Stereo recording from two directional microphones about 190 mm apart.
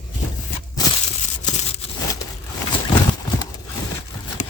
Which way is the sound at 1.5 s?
35° left (ahead or behind).